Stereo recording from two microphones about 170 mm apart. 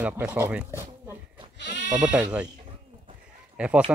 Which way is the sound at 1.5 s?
90° left.